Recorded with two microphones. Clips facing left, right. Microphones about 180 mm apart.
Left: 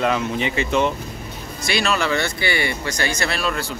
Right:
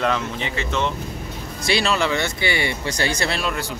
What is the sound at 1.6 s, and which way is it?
Speech, 30° right (ahead or behind).